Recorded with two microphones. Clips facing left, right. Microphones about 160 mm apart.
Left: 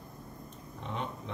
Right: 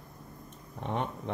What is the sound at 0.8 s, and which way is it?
Speech, 55° right (ahead or behind).